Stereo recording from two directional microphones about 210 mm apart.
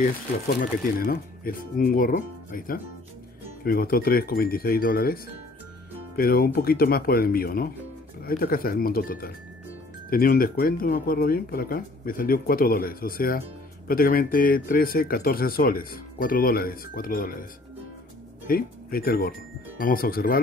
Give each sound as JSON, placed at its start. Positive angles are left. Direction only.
{"t": 0.6, "sound": "speech", "side_deg": 45}
{"t": 18.5, "sound": "speech", "side_deg": 45}